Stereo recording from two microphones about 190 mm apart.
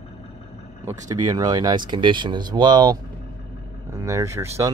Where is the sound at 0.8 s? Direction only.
20° right (ahead or behind).